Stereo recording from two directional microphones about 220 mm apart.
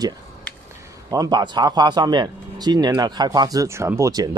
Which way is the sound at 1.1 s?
20° right (ahead or behind).